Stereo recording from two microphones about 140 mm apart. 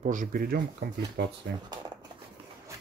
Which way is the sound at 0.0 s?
70° right (ahead or behind).